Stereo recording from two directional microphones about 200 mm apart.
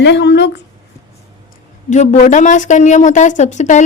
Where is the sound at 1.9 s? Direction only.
35° left (ahead or behind).